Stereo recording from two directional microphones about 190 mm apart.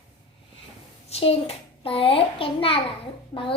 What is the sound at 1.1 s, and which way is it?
A child's voice, 30° left (ahead or behind).